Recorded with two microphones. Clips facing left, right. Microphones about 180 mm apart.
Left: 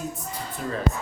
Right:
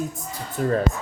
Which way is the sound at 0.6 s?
50° right (ahead or behind).